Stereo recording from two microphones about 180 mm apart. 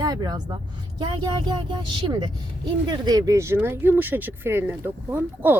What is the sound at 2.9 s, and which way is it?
Speech, 20° right (ahead or behind).